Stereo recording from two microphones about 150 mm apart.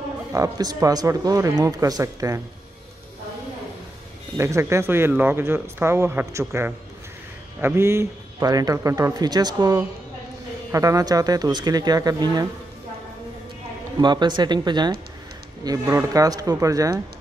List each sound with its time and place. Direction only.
0.3 s speech: 25° right (ahead or behind)
4.4 s speech: 20° right (ahead or behind)
14.0 s speech: 30° right (ahead or behind)